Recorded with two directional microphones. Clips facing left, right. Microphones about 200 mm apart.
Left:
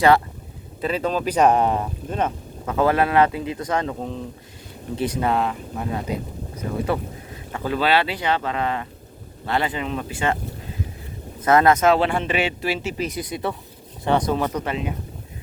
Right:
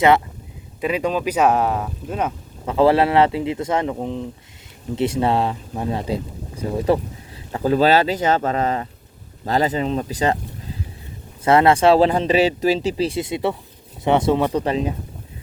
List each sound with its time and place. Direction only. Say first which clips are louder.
0.8 s speech: right 2 dB; 10° right (ahead or behind)
2.6 s speech: right 4 dB; 30° right (ahead or behind)
11.4 s speech: right 2 dB; 30° right (ahead or behind)
14.5 s speech: right 5 dB; 35° right (ahead or behind)